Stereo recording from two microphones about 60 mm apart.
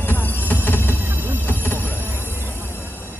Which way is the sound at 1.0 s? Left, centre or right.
Right.